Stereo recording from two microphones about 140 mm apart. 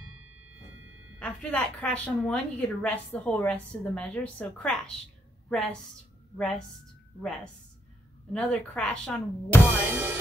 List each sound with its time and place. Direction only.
1.2 s a woman's voice: 5° left (ahead or behind)
8.3 s a woman's voice: 5° left (ahead or behind)
9.7 s music: 20° right (ahead or behind)